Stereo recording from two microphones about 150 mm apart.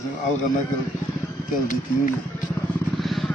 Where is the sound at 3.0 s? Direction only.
Centre (ahead or behind).